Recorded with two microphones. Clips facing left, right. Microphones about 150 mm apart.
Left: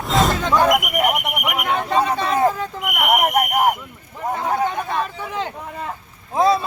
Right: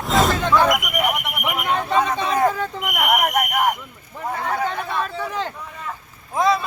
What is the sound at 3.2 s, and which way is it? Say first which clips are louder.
Speech: left 2 dB; 35° left (ahead or behind).